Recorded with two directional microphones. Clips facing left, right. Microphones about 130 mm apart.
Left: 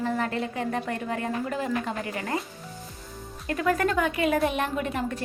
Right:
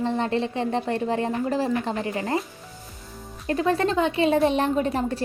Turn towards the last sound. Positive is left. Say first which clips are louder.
# right 5 dB
turn(degrees=-35)  # may be behind; listen again after turning